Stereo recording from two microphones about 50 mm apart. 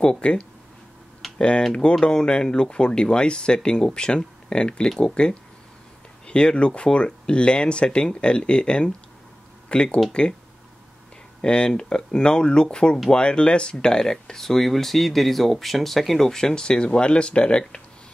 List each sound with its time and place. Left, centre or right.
0.0 s speech: centre
1.6 s speech: centre
11.4 s speech: centre